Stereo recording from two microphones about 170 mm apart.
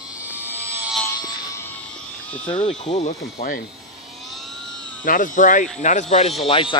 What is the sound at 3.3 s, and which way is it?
Speech, 60° left (ahead or behind).